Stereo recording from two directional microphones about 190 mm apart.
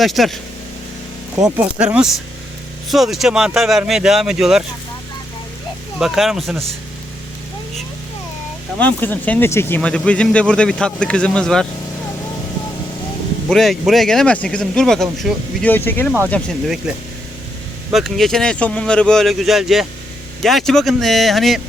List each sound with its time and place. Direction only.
0.0 s speech: centre (ahead or behind)
1.4 s speech: 20° right (ahead or behind)
1.8 s speech: 5° right (ahead or behind)
6.0 s speech: centre (ahead or behind)
8.8 s speech: 10° left (ahead or behind)
13.5 s speech: centre (ahead or behind)
17.9 s speech: centre (ahead or behind)